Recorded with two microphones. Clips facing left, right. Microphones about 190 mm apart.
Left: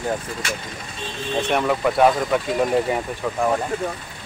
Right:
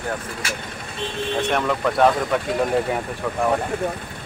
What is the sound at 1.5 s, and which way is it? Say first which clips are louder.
Speech: left 4 dB; 5° left (ahead or behind).